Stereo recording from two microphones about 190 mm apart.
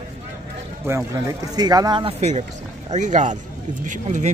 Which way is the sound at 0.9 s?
15° right (ahead or behind).